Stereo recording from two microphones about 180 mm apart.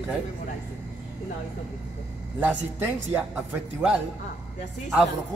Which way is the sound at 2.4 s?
10° right (ahead or behind).